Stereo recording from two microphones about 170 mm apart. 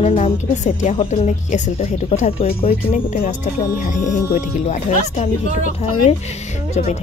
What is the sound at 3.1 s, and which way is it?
Speech, 50° left (ahead or behind).